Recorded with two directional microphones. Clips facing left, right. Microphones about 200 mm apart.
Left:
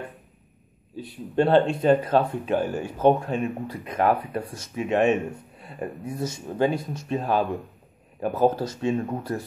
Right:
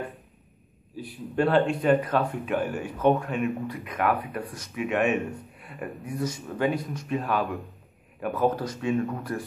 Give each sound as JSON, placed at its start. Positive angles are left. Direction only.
{"t": 1.0, "sound": "speech", "side_deg": 25}